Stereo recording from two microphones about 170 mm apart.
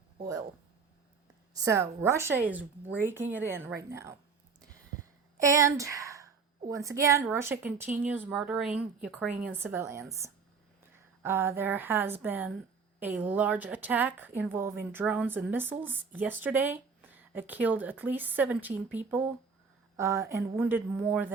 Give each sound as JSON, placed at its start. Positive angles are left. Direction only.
{"t": 1.6, "sound": "speech", "side_deg": -15}
{"t": 5.4, "sound": "speech", "side_deg": -15}